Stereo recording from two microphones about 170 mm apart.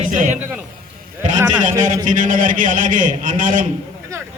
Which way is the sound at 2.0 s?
50° right (ahead or behind).